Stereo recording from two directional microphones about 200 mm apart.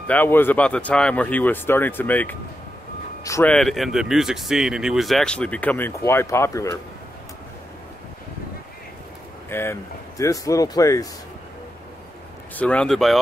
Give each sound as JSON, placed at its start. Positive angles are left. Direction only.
{"t": 0.0, "sound": "speech", "side_deg": 10}
{"t": 3.5, "sound": "speech", "side_deg": 0}
{"t": 9.5, "sound": "speech", "side_deg": 10}
{"t": 12.5, "sound": "speech", "side_deg": 5}